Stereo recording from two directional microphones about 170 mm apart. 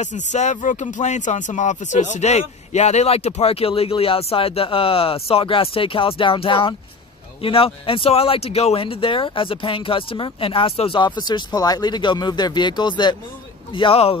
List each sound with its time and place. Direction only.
0.0 s speech: 45° left (ahead or behind)